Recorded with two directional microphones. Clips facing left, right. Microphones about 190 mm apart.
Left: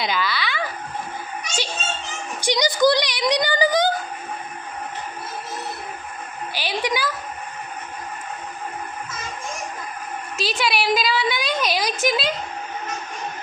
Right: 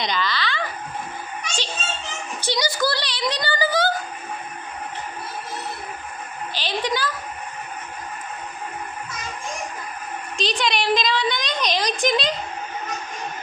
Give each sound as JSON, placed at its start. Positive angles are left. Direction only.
{"t": 0.0, "sound": "speech", "side_deg": 5}
{"t": 2.4, "sound": "speech", "side_deg": 15}
{"t": 6.5, "sound": "a woman's voice", "side_deg": 10}
{"t": 10.3, "sound": "a woman's voice", "side_deg": 5}